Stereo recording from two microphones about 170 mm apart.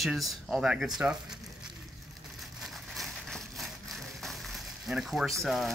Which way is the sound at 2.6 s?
Centre (ahead or behind).